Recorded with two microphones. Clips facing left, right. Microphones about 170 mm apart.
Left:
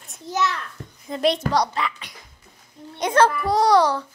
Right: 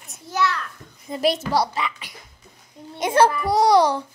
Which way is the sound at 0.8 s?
90° left.